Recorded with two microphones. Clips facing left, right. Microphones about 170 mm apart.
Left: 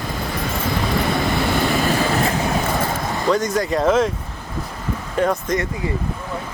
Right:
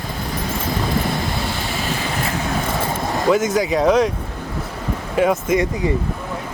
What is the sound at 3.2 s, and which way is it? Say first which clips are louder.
Speech: right 2 dB; 5° right (ahead or behind).